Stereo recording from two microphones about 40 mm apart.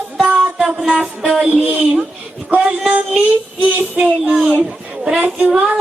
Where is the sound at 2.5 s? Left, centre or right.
Right.